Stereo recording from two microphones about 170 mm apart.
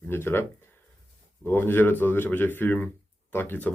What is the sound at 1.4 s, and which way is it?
Speech, 10° left (ahead or behind).